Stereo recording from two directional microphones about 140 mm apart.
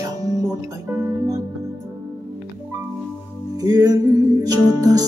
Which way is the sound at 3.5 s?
25° right (ahead or behind).